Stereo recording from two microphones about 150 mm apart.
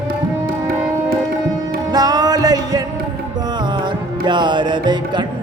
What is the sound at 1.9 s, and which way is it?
Music, 25° right (ahead or behind).